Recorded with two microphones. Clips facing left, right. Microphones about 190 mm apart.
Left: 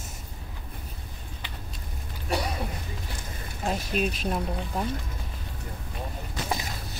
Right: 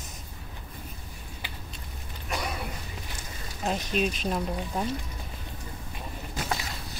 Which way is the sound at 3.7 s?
5° left (ahead or behind).